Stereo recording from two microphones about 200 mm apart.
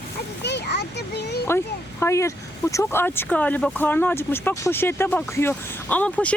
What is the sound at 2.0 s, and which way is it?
Speech, 15° left (ahead or behind).